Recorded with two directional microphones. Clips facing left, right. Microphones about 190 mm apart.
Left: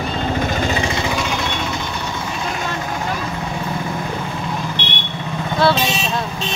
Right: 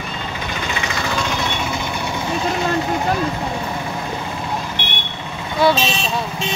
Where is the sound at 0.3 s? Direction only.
45° left (ahead or behind).